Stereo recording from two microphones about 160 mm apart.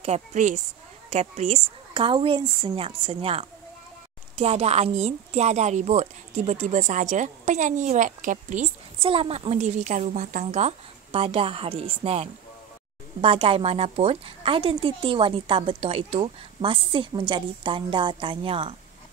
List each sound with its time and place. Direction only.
0.0 s a woman's voice: 45° right (ahead or behind)
9.0 s a woman's voice: 35° right (ahead or behind)